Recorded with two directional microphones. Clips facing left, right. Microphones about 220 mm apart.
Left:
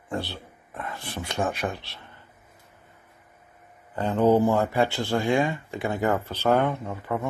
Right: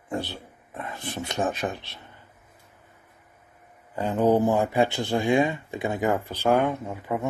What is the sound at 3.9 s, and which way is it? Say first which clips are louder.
Speech: left 1 dB; 15° right (ahead or behind).